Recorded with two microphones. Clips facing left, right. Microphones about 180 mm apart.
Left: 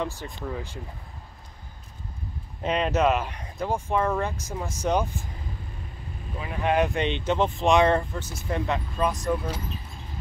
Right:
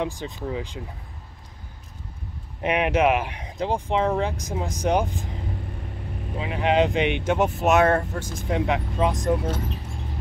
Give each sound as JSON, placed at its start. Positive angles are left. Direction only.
{"t": 0.0, "sound": "speech", "side_deg": -15}
{"t": 2.6, "sound": "speech", "side_deg": -10}
{"t": 6.7, "sound": "speech", "side_deg": -20}
{"t": 9.6, "sound": "a sound", "side_deg": -75}